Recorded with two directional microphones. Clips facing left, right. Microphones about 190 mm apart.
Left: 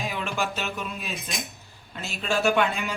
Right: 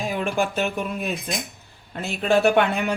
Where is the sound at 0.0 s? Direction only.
50° right (ahead or behind).